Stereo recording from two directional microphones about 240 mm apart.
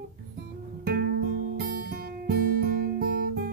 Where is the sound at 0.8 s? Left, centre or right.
Right.